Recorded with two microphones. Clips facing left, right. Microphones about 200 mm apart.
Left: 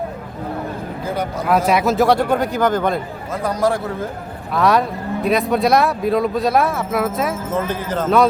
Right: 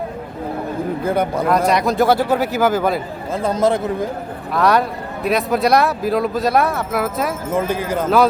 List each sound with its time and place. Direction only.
1.0 s a man's voice: 55° right (ahead or behind)
1.5 s speech: 5° left (ahead or behind)
3.3 s a man's voice: 25° right (ahead or behind)
4.5 s speech: centre (ahead or behind)
7.5 s a man's voice: 10° right (ahead or behind)